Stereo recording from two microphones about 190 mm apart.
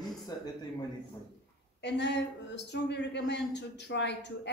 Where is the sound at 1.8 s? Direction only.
65° left (ahead or behind).